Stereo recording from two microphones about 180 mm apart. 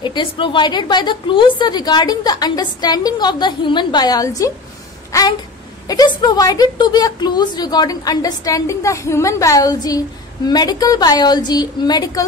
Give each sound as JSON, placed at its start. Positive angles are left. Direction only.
{"t": 0.0, "sound": "a woman's voice", "side_deg": 25}
{"t": 5.9, "sound": "a woman's voice", "side_deg": 20}